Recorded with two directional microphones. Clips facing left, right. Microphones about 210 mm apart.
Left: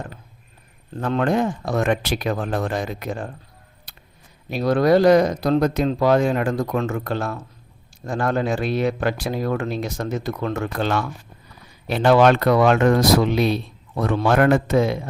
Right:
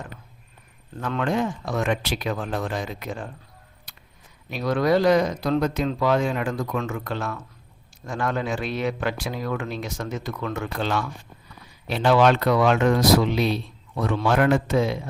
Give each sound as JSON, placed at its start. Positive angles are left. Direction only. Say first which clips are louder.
{"t": 0.9, "sound": "speech", "louder": "left 4 dB", "side_deg": 40}
{"t": 4.4, "sound": "speech", "louder": "left 4 dB", "side_deg": 35}